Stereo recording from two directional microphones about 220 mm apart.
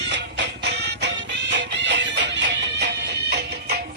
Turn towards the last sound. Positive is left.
turn(degrees=-50)  # may be behind; listen again after turning